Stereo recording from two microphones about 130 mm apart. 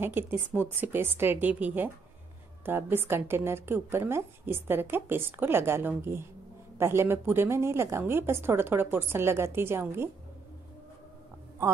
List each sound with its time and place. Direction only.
0.0 s a woman's voice: 15° right (ahead or behind)